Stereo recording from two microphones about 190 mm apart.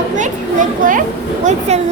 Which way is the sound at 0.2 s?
45° right (ahead or behind).